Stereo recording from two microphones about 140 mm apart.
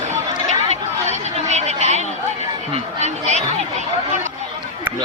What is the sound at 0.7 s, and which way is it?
Chatter, 55° right (ahead or behind).